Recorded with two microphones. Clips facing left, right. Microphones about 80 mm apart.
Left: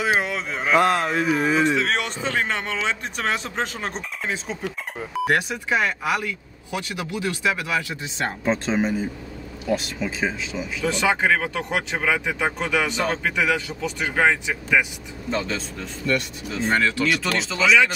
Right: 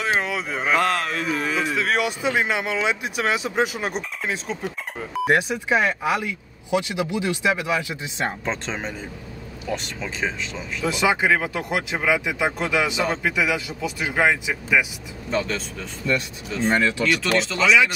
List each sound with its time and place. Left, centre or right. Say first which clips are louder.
0.0 s speech: left 1 dB; centre
0.7 s speech: left 5 dB; centre
5.3 s speech: right 3 dB; right
8.5 s speech: left 6 dB; centre
10.9 s speech: right 1 dB; centre
16.7 s speech: left 1 dB; centre
17.3 s speech: right 2 dB; centre